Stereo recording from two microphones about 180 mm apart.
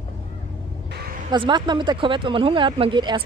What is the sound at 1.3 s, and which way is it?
Speech, 25° right (ahead or behind).